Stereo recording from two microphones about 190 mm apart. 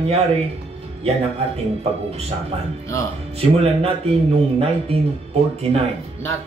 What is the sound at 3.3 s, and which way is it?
Speech, 30° right (ahead or behind).